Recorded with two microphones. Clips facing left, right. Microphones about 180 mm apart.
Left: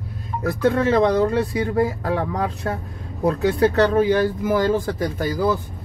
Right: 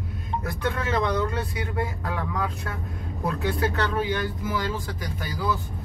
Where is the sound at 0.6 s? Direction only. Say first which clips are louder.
Left 10 dB; 35° left (ahead or behind).